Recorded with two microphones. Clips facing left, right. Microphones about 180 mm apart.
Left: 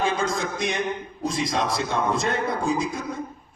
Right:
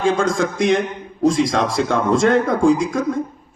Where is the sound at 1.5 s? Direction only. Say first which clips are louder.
Right 6 dB; 90° right.